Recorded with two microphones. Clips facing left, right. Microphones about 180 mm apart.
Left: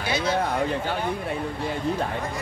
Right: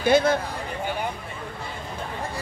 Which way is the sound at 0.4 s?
65° left (ahead or behind).